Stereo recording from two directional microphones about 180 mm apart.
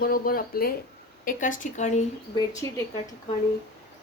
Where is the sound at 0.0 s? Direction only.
55° left (ahead or behind).